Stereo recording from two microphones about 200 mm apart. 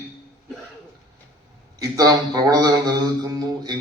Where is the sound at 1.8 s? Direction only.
20° right (ahead or behind).